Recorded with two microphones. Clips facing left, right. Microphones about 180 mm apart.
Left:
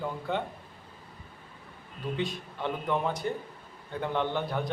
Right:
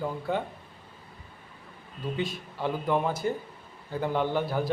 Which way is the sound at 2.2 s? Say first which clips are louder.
Right 2 dB; 5° right (ahead or behind).